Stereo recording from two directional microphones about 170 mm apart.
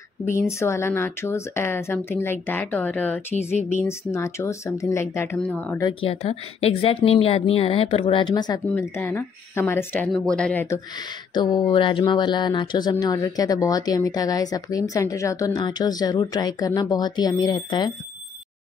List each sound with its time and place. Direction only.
0.3 s speech: 15° left (ahead or behind)
5.9 s speech: 35° left (ahead or behind)
8.7 s speech: 15° left (ahead or behind)
11.3 s speech: 25° left (ahead or behind)